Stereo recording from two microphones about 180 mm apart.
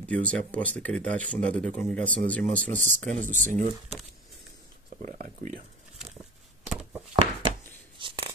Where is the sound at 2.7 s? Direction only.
45° right (ahead or behind).